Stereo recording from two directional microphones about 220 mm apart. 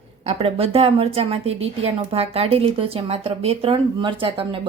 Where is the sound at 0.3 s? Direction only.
25° right (ahead or behind).